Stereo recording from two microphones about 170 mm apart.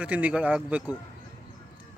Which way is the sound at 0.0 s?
10° right (ahead or behind).